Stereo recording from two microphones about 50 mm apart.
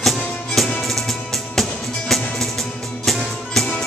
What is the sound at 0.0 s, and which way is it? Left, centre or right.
Music, centre.